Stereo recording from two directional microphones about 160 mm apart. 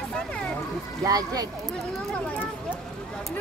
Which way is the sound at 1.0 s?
25° right (ahead or behind).